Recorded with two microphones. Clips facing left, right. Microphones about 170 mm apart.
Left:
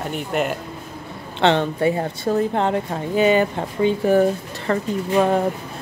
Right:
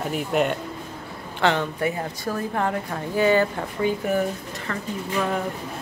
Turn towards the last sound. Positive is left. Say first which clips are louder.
# left 7 dB
turn(degrees=35)  # may be behind; listen again after turning